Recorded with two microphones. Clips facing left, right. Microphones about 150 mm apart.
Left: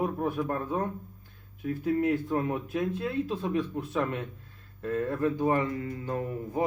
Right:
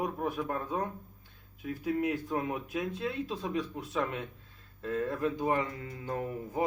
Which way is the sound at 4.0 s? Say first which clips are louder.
Left 2 dB; 10° right (ahead or behind).